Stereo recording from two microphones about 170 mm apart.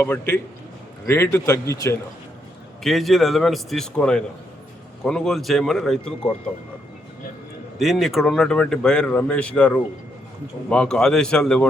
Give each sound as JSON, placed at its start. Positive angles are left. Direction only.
{"t": 0.0, "sound": "speech", "side_deg": 15}
{"t": 2.8, "sound": "speech", "side_deg": 0}
{"t": 7.8, "sound": "speech", "side_deg": 0}